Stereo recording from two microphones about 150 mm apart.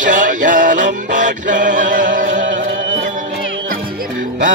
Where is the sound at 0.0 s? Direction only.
60° right (ahead or behind).